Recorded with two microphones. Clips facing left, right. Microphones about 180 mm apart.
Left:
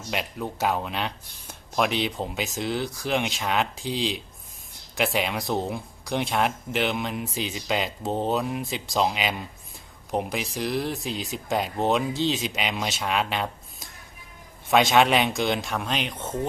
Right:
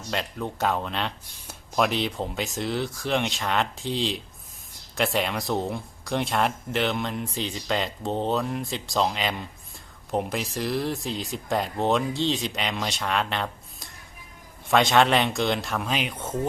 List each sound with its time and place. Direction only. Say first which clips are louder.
0.1 s speech: even; 10° left (ahead or behind); by 16.5 s 10° right (ahead or behind)